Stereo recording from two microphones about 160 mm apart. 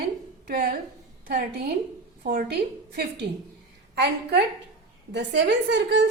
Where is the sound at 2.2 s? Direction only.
65° right (ahead or behind).